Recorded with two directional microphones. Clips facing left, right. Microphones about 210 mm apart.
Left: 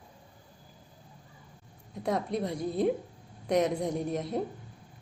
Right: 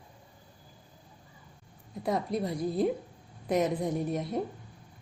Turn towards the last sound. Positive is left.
turn(degrees=0)  # may be behind; listen again after turning